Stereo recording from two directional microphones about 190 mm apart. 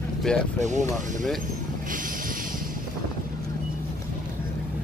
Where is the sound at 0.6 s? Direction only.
40° right (ahead or behind).